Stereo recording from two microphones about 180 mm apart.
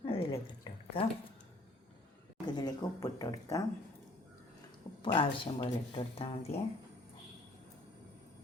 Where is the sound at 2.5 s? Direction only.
20° left (ahead or behind).